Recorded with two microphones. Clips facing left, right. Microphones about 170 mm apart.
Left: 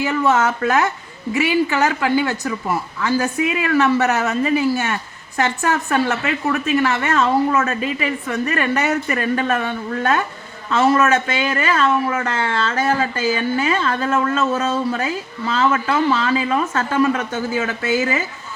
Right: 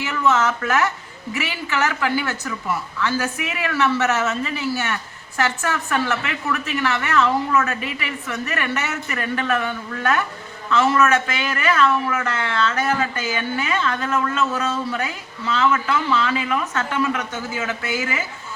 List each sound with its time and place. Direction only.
0.1 s a woman's voice: 35° left (ahead or behind)